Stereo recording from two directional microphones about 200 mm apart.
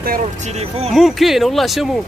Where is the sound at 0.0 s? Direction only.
40° right (ahead or behind).